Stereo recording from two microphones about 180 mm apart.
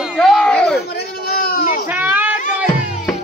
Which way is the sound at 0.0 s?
Centre (ahead or behind).